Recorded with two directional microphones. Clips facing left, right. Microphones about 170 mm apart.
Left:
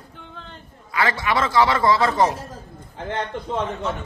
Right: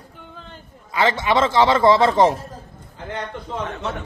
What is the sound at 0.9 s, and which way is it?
A man's voice, 25° right (ahead or behind).